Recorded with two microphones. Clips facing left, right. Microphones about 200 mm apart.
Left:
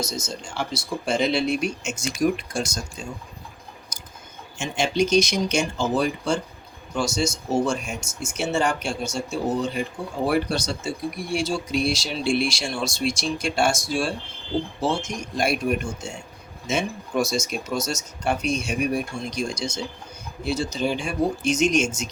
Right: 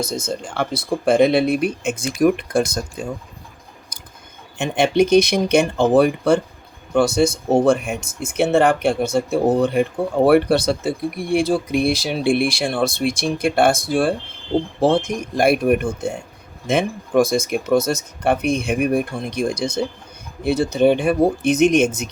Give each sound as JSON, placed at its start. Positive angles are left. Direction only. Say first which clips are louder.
{"t": 0.0, "sound": "speech", "louder": "right 6 dB", "side_deg": -55}
{"t": 4.5, "sound": "speech", "louder": "right 7 dB", "side_deg": -60}